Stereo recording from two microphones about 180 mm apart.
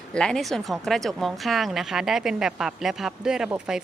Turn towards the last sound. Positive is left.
turn(degrees=-5)  # may be behind; listen again after turning